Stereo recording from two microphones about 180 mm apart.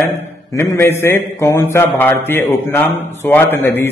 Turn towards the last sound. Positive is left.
turn(degrees=10)  # may be behind; listen again after turning